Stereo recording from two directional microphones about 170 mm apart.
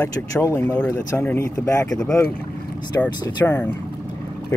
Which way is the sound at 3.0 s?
15° left (ahead or behind).